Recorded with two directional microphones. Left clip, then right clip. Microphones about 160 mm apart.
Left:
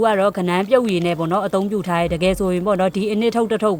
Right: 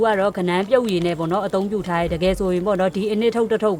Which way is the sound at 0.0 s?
20° left (ahead or behind).